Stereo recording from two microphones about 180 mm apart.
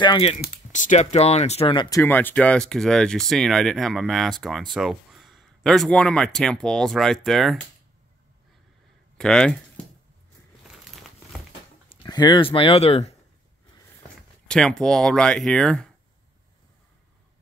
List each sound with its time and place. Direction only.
0.0 s speech: 30° left (ahead or behind)
2.0 s speech: 10° left (ahead or behind)
9.2 s speech: 5° left (ahead or behind)
11.9 s speech: 25° left (ahead or behind)
14.5 s speech: 5° left (ahead or behind)